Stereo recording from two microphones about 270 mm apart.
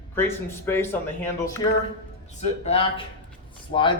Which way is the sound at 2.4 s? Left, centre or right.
Left.